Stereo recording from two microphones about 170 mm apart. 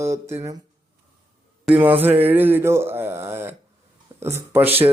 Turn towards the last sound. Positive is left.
turn(degrees=-10)  # may be behind; listen again after turning